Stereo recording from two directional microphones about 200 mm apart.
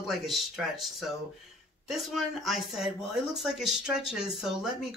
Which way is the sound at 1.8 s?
Centre (ahead or behind).